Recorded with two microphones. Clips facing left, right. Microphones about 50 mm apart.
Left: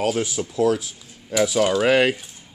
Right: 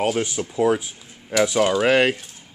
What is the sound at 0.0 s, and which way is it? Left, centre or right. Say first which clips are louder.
Speech: even; centre.